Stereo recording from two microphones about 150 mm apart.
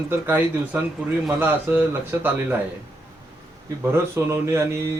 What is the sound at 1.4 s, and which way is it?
Speech, 15° right (ahead or behind).